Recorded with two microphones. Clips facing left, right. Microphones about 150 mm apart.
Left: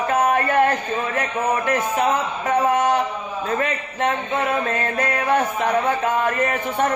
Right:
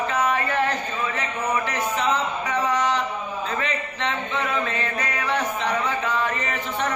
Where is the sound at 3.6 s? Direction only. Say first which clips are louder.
Left 4 dB; 50° left (ahead or behind).